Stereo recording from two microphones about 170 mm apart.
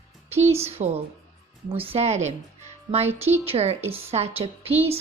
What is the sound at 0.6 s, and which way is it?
A woman's voice, 35° right (ahead or behind).